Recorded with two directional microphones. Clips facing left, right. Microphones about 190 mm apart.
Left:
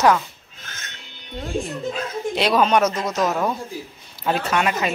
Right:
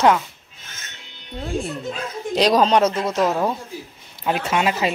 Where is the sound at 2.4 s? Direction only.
40° right (ahead or behind).